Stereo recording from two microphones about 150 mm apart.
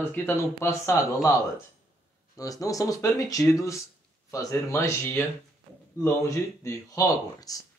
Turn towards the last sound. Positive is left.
turn(degrees=25)  # may be behind; listen again after turning